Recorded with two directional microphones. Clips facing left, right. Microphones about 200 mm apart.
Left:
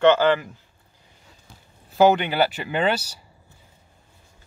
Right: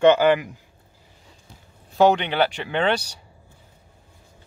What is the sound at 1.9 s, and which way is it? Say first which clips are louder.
Speech: even; 5° left (ahead or behind).